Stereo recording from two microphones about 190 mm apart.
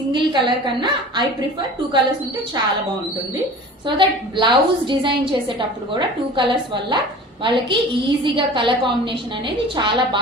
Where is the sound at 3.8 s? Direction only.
25° right (ahead or behind).